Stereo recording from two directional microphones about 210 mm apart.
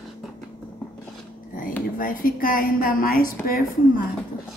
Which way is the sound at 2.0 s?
40° left (ahead or behind).